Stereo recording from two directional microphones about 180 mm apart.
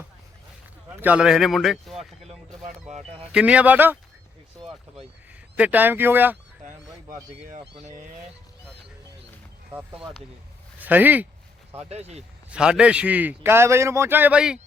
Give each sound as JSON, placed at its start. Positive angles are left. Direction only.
{"t": 0.9, "sound": "speech", "side_deg": -10}
{"t": 3.3, "sound": "a man's voice", "side_deg": -5}
{"t": 5.5, "sound": "a man's voice", "side_deg": -10}
{"t": 7.4, "sound": "speech", "side_deg": -45}
{"t": 10.8, "sound": "speech", "side_deg": -10}
{"t": 11.8, "sound": "speech", "side_deg": -35}
{"t": 12.5, "sound": "a man's voice", "side_deg": -5}